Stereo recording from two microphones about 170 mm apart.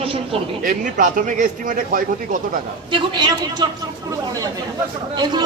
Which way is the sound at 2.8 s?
30° right (ahead or behind).